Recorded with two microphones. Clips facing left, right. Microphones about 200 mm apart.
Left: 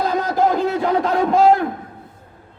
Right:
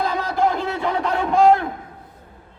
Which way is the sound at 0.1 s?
40° left (ahead or behind).